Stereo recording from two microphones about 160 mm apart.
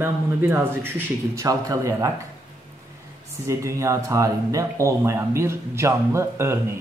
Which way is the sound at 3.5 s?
20° right (ahead or behind).